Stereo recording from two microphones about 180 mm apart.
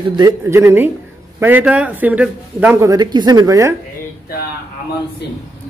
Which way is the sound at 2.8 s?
20° right (ahead or behind).